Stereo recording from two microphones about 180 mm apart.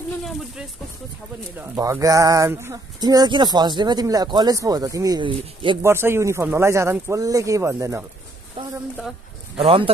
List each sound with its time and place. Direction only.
1.8 s speech: 20° right (ahead or behind)
5.8 s speech: 15° right (ahead or behind)
8.6 s a sound: 30° right (ahead or behind)
9.6 s speech: 35° right (ahead or behind)